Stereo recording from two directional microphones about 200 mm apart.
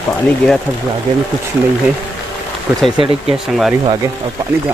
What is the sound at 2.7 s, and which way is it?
Speech, 5° right (ahead or behind).